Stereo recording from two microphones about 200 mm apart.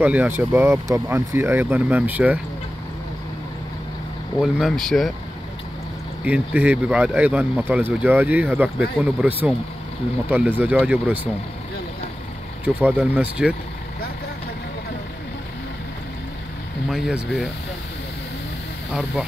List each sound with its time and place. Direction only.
0.0 s speech: 10° right (ahead or behind)
4.4 s speech: centre (ahead or behind)
6.2 s speech: 5° right (ahead or behind)
12.6 s speech: 10° right (ahead or behind)
16.9 s speech: centre (ahead or behind)